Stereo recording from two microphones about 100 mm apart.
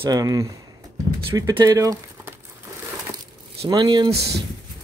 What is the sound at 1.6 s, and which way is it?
Speech, 35° right (ahead or behind).